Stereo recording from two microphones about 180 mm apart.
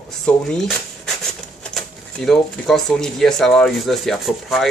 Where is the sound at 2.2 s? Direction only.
Centre (ahead or behind).